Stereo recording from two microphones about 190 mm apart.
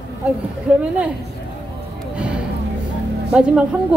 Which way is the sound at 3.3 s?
5° right (ahead or behind).